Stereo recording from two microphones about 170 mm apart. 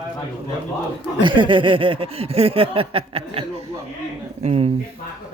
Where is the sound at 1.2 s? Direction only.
30° right (ahead or behind).